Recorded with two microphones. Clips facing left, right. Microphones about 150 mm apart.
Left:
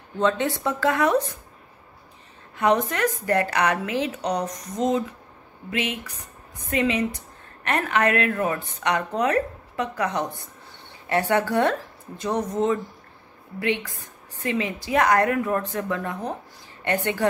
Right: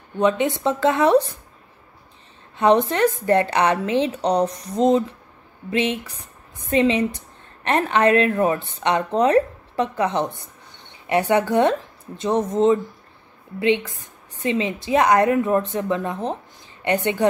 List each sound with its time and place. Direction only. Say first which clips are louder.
0.2 s a woman's voice: right 3 dB; 15° right (ahead or behind)
2.5 s a woman's voice: right 5 dB; 30° right (ahead or behind)